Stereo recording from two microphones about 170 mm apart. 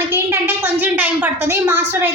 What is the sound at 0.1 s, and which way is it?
A woman's voice, 10° right (ahead or behind).